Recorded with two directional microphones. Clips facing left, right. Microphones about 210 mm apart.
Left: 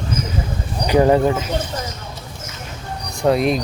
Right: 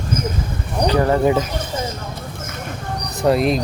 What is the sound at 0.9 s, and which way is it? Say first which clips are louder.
Speech: left 3 dB; 15° left (ahead or behind).